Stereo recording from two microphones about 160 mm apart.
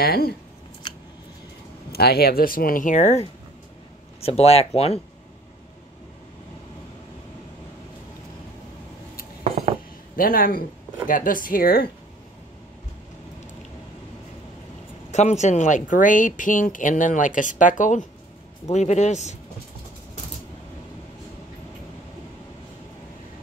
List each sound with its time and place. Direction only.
0.0 s speech: 75° left (ahead or behind)
1.9 s speech: 80° left; by 5.0 s 40° left (ahead or behind)
9.4 s cutlery: 40° right (ahead or behind)
10.1 s speech: 65° left (ahead or behind)
15.0 s speech: 45° left (ahead or behind)